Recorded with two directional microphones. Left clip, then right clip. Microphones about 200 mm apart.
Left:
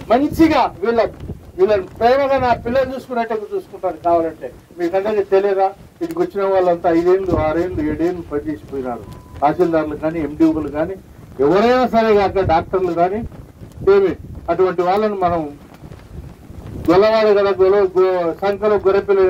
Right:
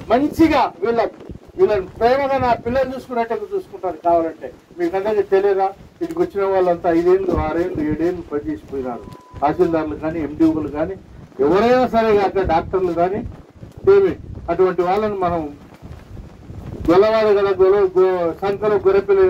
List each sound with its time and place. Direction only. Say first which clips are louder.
0.1 s a man's voice: left 1 dB; 40° left (ahead or behind)
16.8 s a man's voice: left 1 dB; 35° left (ahead or behind)